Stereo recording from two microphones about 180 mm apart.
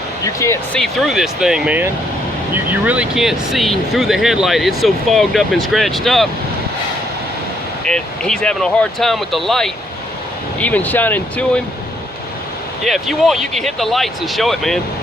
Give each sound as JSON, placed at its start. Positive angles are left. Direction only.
{"t": 0.3, "sound": "speech", "side_deg": 15}
{"t": 0.8, "sound": "speech", "side_deg": 0}
{"t": 7.9, "sound": "speech", "side_deg": 5}
{"t": 12.8, "sound": "speech", "side_deg": 0}